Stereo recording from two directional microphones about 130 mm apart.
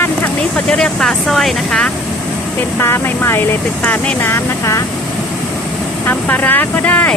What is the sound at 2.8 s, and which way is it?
Speech, 20° left (ahead or behind).